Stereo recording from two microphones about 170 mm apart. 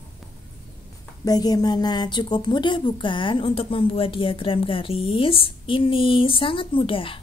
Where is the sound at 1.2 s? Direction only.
20° left (ahead or behind).